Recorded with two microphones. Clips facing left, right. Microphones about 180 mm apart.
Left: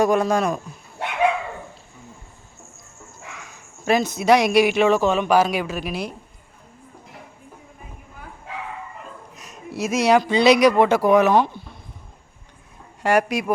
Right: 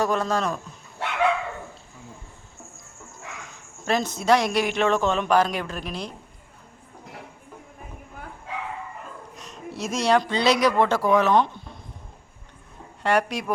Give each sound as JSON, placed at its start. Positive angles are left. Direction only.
{"t": 0.0, "sound": "speech", "side_deg": 15}
{"t": 3.8, "sound": "speech", "side_deg": 10}
{"t": 9.3, "sound": "speech", "side_deg": 5}
{"t": 13.0, "sound": "speech", "side_deg": 10}